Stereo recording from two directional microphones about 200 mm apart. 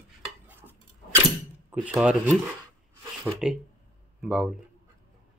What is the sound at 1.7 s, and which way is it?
Speech, 15° right (ahead or behind).